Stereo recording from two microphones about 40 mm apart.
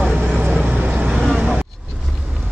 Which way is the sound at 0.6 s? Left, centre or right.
Right.